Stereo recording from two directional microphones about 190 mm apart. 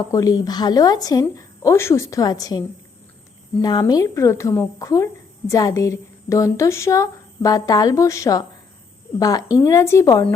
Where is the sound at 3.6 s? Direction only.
20° left (ahead or behind).